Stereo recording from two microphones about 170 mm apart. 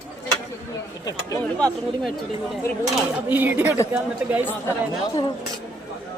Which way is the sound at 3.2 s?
10° right (ahead or behind).